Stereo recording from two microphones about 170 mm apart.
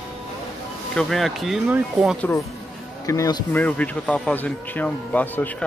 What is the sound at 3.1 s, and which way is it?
Speech, 20° left (ahead or behind).